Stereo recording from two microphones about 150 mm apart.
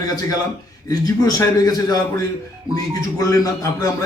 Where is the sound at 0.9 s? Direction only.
25° left (ahead or behind).